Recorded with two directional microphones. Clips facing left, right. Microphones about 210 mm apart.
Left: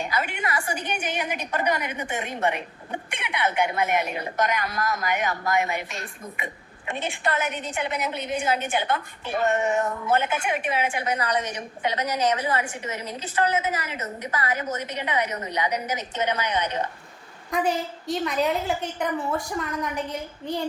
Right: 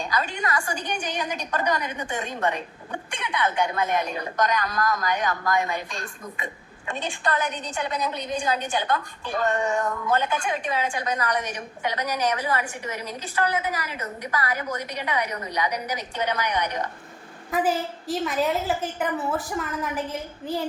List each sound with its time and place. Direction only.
0.0 s a woman's voice: 20° left (ahead or behind)
17.5 s a woman's voice: 5° right (ahead or behind)